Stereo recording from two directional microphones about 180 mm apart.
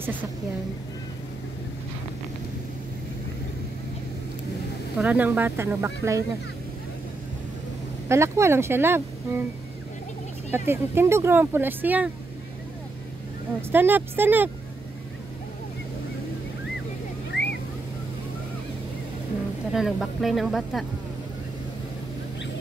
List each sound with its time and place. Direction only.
4.9 s speech: 10° right (ahead or behind)
8.1 s speech: 15° right (ahead or behind)
10.5 s speech: 15° right (ahead or behind)
13.6 s speech: 10° right (ahead or behind)
17.3 s vehicle: 70° left (ahead or behind)
19.7 s speech: centre (ahead or behind)